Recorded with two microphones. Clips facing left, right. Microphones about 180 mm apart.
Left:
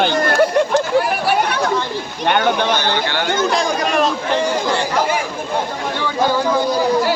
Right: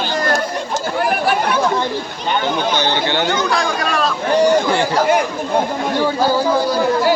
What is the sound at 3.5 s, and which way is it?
Speech, 20° left (ahead or behind).